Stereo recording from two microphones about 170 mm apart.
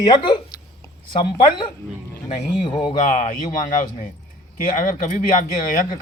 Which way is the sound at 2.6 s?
30° left (ahead or behind).